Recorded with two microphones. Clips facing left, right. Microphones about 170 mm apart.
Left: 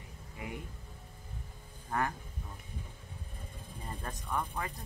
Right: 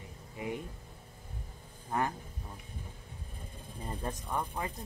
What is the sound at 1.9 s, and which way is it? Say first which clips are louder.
Speech: right 1 dB; 20° right (ahead or behind).